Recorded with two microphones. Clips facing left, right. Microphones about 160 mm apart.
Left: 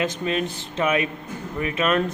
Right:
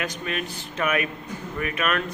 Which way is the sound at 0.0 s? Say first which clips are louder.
Left 6 dB; 25° left (ahead or behind).